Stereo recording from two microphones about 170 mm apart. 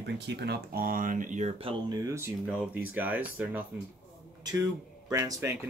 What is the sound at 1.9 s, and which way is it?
Speech, 20° right (ahead or behind).